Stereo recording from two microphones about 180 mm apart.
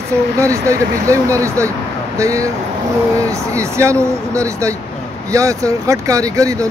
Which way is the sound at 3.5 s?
15° right (ahead or behind).